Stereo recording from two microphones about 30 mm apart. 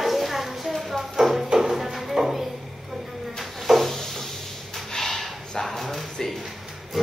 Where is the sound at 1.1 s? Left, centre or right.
Centre.